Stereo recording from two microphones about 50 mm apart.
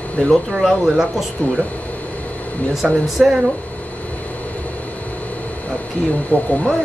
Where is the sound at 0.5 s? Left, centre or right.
Centre.